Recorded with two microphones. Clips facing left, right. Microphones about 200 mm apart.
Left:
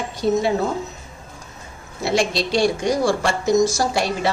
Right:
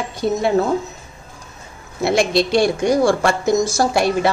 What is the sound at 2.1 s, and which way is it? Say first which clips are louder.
A woman's voice: right 4 dB; 55° right (ahead or behind).